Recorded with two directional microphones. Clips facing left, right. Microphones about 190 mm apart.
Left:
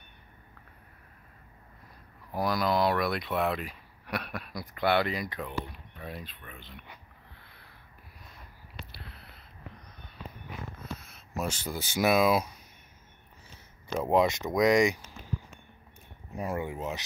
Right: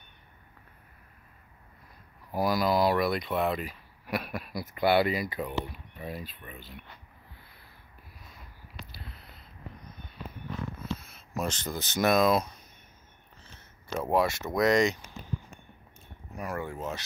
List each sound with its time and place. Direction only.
2.3 s speech: 5° right (ahead or behind)
8.7 s a sound: centre (ahead or behind)
11.0 s speech: centre (ahead or behind)
14.0 s speech: 20° left (ahead or behind)
16.3 s speech: 20° left (ahead or behind)